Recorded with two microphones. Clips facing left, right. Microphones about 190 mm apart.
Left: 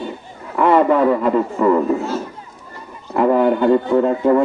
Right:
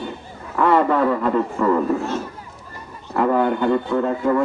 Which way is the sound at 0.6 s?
20° left (ahead or behind).